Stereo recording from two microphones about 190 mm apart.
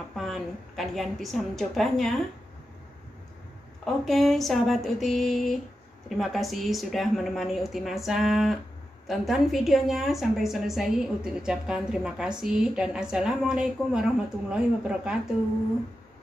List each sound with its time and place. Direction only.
0.1 s a woman's voice: centre (ahead or behind)
3.8 s a woman's voice: centre (ahead or behind)